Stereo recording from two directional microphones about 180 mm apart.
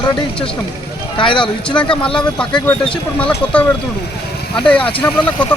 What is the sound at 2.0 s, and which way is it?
Speech, 5° left (ahead or behind).